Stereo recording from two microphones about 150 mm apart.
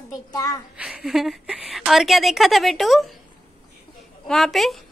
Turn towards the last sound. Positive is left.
turn(degrees=0)  # may be behind; listen again after turning